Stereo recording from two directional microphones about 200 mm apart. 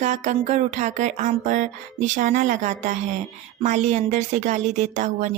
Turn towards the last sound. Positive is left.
turn(degrees=-35)  # may be behind; listen again after turning